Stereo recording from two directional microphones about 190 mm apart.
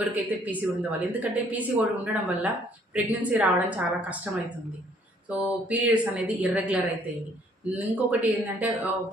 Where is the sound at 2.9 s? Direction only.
5° right (ahead or behind).